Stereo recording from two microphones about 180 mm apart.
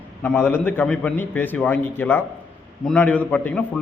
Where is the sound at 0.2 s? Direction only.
10° left (ahead or behind).